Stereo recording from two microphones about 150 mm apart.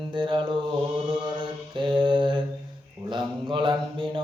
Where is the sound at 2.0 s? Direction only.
30° right (ahead or behind).